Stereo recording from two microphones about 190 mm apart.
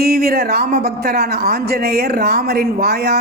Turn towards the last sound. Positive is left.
turn(degrees=-60)  # may be behind; listen again after turning